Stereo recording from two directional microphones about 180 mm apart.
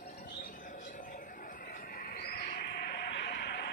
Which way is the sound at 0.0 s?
55° left (ahead or behind).